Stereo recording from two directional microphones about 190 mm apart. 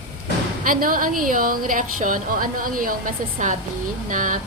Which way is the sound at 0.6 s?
45° right (ahead or behind).